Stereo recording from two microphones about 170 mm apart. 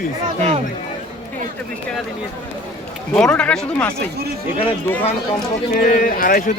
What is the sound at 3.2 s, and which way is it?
Speech, 5° left (ahead or behind).